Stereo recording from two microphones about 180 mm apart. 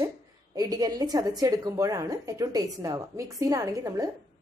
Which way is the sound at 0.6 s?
20° right (ahead or behind).